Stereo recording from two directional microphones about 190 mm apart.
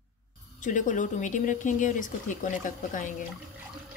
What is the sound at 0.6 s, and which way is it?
Speech, 40° left (ahead or behind).